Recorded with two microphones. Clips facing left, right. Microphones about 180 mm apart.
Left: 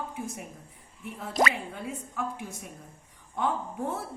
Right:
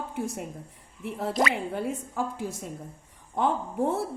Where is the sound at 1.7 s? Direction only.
80° right.